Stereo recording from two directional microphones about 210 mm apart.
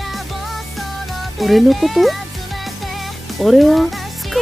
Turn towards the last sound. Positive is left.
turn(degrees=0)  # may be behind; listen again after turning